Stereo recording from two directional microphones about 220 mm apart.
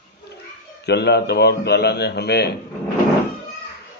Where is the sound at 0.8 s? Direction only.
50° left (ahead or behind).